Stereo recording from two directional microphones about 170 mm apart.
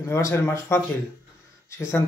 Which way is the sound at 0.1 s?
15° left (ahead or behind).